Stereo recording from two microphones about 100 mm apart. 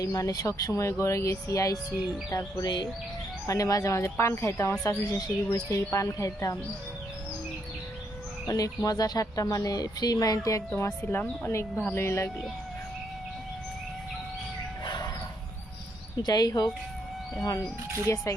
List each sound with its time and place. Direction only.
0.0 s speech: 35° left (ahead or behind)
2.6 s speech: 50° left (ahead or behind)
3.4 s speech: 35° left (ahead or behind)
8.4 s speech: 35° left (ahead or behind)
14.8 s music: 45° left (ahead or behind)
16.2 s speech: 40° left (ahead or behind)
18.0 s speech: 30° left (ahead or behind)